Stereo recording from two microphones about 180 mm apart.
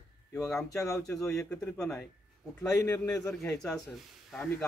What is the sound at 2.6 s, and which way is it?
Speech, 15° left (ahead or behind).